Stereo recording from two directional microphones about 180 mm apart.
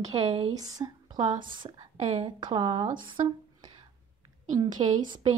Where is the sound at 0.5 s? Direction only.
20° right (ahead or behind).